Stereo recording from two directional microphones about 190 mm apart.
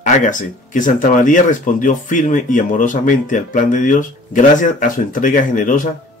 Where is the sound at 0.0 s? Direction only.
45° left (ahead or behind).